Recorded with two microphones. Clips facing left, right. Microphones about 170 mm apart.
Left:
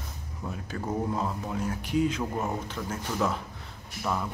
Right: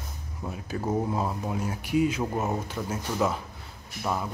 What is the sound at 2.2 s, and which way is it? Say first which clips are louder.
Speech: right 2 dB; 20° right (ahead or behind).